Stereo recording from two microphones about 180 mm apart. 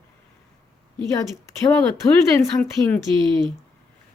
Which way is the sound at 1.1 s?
20° left (ahead or behind).